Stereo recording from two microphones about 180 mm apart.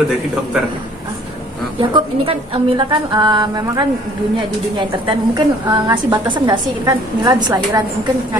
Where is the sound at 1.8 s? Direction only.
30° right (ahead or behind).